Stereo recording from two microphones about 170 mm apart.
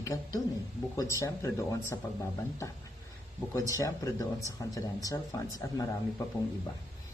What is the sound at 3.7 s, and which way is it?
A woman's voice, 20° left (ahead or behind).